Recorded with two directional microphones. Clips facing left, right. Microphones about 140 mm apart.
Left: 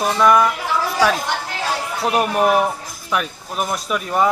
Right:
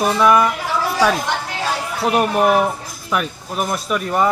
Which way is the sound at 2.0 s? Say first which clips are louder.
Right 2 dB; centre (ahead or behind).